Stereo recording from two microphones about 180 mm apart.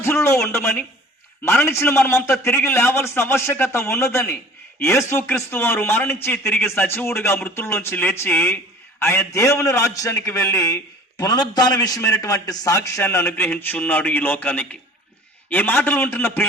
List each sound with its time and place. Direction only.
0.0 s a man's voice: 15° left (ahead or behind)